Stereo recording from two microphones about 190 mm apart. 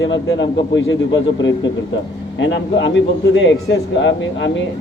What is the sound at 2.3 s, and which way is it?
A man's voice, 70° left (ahead or behind).